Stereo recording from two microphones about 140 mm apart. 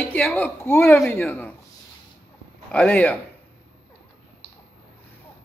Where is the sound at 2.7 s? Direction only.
10° left (ahead or behind).